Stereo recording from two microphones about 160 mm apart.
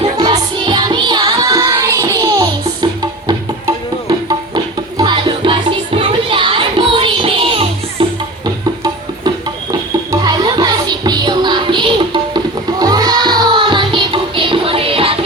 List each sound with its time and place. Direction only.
0.2 s music: 25° right (ahead or behind)
10.1 s music: 25° right (ahead or behind)